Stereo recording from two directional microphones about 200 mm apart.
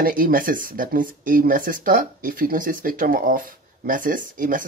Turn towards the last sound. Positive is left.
turn(degrees=-40)  # may be behind; listen again after turning